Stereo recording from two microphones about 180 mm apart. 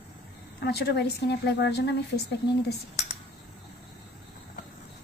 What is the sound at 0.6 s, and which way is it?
A woman's voice, 65° left (ahead or behind).